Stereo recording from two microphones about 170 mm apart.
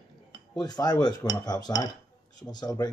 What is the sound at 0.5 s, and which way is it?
Speech, 25° left (ahead or behind).